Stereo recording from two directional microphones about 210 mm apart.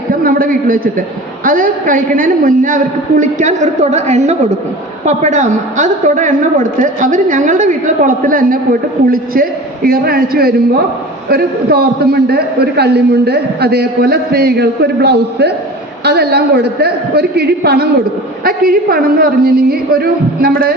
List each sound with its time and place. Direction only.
0.2 s a man's voice: 45° right (ahead or behind)